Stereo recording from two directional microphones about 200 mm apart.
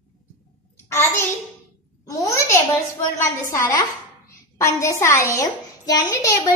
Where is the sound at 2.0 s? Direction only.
15° left (ahead or behind).